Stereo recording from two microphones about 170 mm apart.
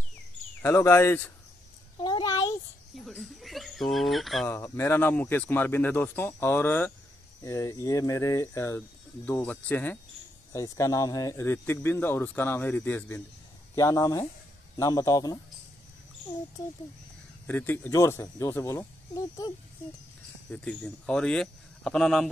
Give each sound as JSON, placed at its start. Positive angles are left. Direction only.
{"t": 0.6, "sound": "speech", "side_deg": 15}
{"t": 2.0, "sound": "a sound", "side_deg": 25}
{"t": 3.2, "sound": "speech", "side_deg": 0}
{"t": 4.5, "sound": "speech", "side_deg": 15}
{"t": 17.5, "sound": "speech", "side_deg": 10}
{"t": 20.5, "sound": "speech", "side_deg": 5}